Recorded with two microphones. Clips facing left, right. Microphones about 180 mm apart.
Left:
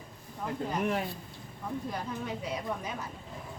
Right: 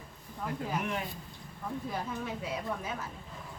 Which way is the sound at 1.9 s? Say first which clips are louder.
Even; 5° right (ahead or behind).